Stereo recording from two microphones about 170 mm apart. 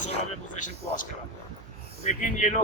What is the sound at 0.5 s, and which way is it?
Speech, 50° left (ahead or behind).